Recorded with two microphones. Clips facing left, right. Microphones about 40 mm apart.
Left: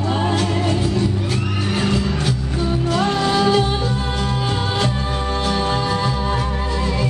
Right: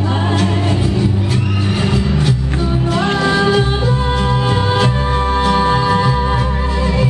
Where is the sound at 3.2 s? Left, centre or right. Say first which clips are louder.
Right 3 dB; centre.